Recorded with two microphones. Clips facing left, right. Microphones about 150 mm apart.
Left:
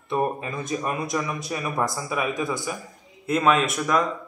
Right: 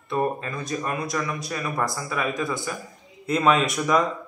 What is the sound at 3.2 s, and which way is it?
Speech, 5° left (ahead or behind).